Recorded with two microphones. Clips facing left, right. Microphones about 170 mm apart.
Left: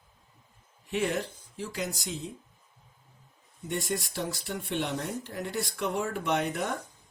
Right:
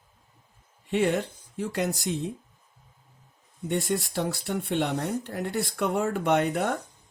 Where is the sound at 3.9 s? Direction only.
50° right (ahead or behind).